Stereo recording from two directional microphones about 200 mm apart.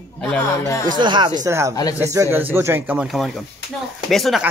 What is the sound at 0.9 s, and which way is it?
A woman's voice, 20° right (ahead or behind).